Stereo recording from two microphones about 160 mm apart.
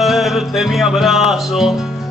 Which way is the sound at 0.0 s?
Centre (ahead or behind).